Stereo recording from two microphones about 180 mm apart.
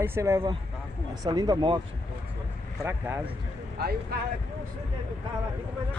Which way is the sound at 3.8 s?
60° right (ahead or behind).